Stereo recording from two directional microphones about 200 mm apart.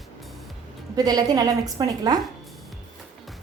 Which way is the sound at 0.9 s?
20° right (ahead or behind).